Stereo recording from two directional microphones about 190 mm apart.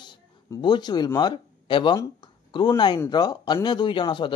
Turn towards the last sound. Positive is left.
turn(degrees=25)  # may be behind; listen again after turning